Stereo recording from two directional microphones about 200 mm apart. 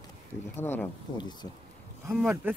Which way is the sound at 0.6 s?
10° left (ahead or behind).